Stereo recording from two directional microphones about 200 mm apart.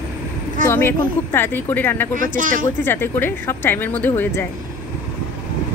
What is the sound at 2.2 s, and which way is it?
Speech, 40° right (ahead or behind).